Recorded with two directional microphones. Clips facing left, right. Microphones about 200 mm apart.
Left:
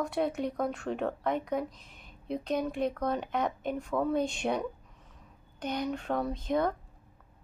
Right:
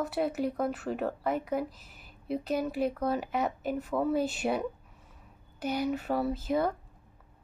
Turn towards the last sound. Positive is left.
turn(degrees=-5)  # may be behind; listen again after turning